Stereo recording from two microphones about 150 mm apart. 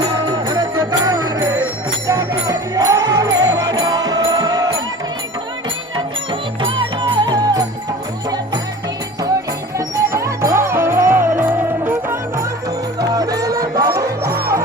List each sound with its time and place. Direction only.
0.3 s music: 30° right (ahead or behind)
6.6 s music: 30° right (ahead or behind)
9.7 s music: 20° right (ahead or behind)
13.0 s music: 25° right (ahead or behind)